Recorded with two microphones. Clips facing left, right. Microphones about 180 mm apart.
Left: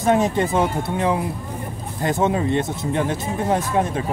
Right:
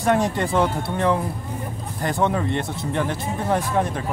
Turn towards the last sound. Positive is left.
turn(degrees=20)  # may be behind; listen again after turning